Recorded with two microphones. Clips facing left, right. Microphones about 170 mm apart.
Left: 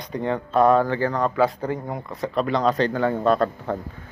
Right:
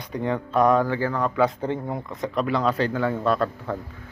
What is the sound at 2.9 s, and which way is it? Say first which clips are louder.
Speech: left 3 dB; 35° left (ahead or behind).